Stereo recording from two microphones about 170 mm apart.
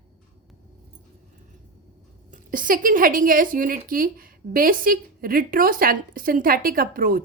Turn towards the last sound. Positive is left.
turn(degrees=-60)  # may be behind; listen again after turning